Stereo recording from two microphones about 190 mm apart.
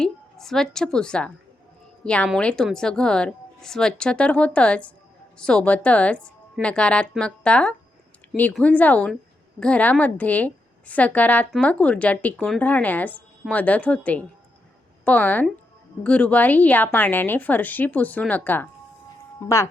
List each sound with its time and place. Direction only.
0.0 s a woman's voice: centre (ahead or behind)